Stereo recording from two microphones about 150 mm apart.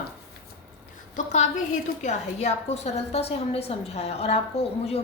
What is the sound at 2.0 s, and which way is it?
A woman's voice, 50° left (ahead or behind).